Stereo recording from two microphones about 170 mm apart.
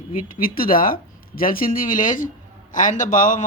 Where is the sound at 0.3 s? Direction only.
55° left (ahead or behind).